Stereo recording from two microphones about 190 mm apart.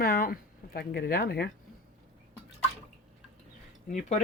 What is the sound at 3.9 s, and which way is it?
Speech, 40° left (ahead or behind).